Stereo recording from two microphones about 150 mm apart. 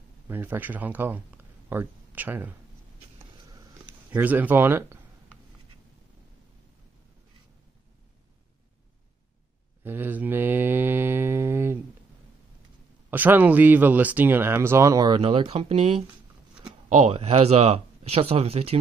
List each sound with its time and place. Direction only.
0.3 s speech: 15° right (ahead or behind)
4.1 s speech: 10° right (ahead or behind)
9.8 s mantra: 15° right (ahead or behind)
13.1 s speech: 10° right (ahead or behind)
15.1 s speech: 40° right (ahead or behind)
17.0 s speech: 40° right (ahead or behind)